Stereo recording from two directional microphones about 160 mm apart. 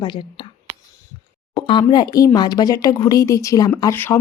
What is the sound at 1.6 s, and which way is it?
Speech, 25° left (ahead or behind).